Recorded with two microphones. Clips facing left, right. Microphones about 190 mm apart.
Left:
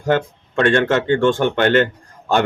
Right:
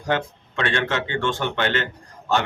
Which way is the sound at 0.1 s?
50° left (ahead or behind).